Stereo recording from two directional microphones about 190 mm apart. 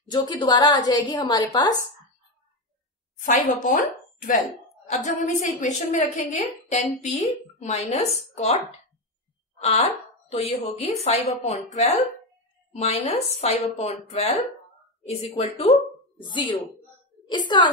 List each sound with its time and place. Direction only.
0.1 s a woman's voice: 25° left (ahead or behind)
3.2 s a woman's voice: 45° left (ahead or behind)
9.6 s a woman's voice: 35° left (ahead or behind)
15.7 s a sound: 20° right (ahead or behind)
17.5 s a woman's voice: 25° left (ahead or behind)